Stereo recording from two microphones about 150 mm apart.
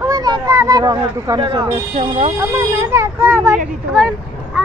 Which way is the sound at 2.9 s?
20° right (ahead or behind).